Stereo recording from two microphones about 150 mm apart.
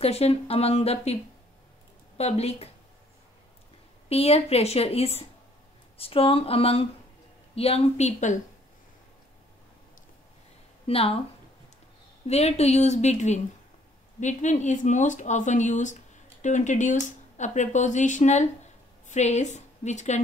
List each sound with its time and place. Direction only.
0.0 s speech: 45° left (ahead or behind)
2.1 s speech: 45° left (ahead or behind)
4.1 s speech: 40° left (ahead or behind)
10.9 s speech: 40° left (ahead or behind)
12.3 s a woman's voice: 45° left (ahead or behind)